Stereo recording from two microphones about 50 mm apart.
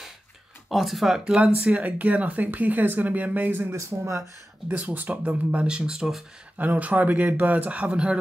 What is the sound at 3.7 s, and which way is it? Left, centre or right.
Speech, right.